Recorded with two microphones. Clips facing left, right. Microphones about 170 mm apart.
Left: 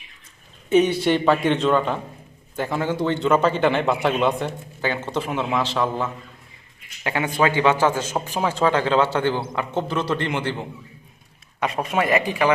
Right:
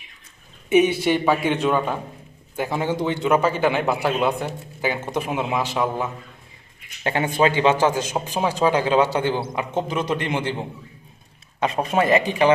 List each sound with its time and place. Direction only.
0.7 s a man's voice: 15° right (ahead or behind)
7.0 s a man's voice: 30° right (ahead or behind)
11.6 s speech: 30° right (ahead or behind)